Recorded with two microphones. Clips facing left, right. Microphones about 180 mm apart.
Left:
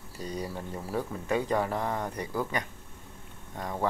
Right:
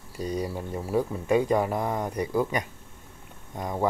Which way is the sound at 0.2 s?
10° right (ahead or behind).